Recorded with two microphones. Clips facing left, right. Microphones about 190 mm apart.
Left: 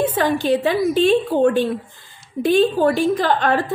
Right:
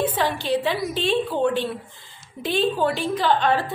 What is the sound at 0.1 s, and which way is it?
A woman's voice, 50° left (ahead or behind).